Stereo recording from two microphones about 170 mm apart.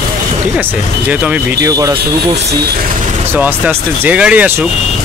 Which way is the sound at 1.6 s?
20° right (ahead or behind).